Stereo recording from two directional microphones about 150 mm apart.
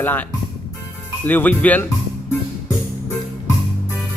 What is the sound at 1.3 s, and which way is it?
Speech, 10° left (ahead or behind).